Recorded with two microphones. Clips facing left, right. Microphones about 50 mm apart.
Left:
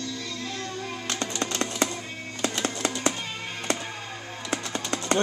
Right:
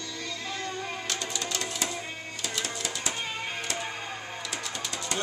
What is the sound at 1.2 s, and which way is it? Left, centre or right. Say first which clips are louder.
Music: left 4 dB; left.